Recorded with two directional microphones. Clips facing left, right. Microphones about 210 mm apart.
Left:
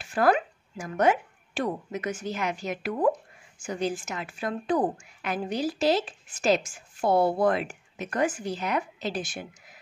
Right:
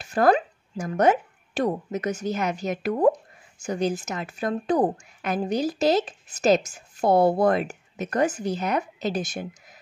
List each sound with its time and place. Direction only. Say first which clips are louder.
0.0 s speech: right 3 dB; 40° right (ahead or behind)